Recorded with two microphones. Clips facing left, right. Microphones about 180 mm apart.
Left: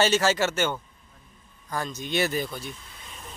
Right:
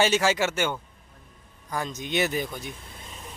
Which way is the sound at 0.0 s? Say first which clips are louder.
Even; 15° right (ahead or behind).